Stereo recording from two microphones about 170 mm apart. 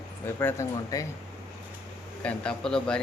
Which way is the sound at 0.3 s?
15° left (ahead or behind).